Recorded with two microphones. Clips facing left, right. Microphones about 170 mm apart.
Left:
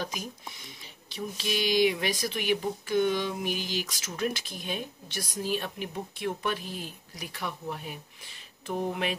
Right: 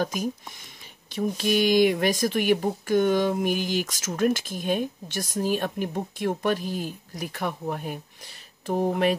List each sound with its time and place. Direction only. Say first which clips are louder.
1.1 s speech: right 9 dB; 50° right (ahead or behind)